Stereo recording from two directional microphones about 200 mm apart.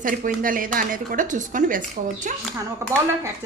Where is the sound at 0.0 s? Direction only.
40° right (ahead or behind).